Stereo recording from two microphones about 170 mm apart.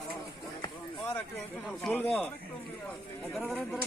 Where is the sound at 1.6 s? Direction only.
5° left (ahead or behind).